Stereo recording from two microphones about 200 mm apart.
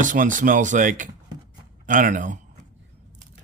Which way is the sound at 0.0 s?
40° right (ahead or behind).